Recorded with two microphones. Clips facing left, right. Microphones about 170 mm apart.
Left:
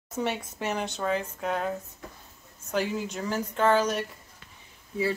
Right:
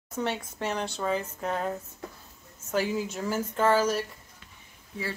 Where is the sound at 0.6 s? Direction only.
5° left (ahead or behind).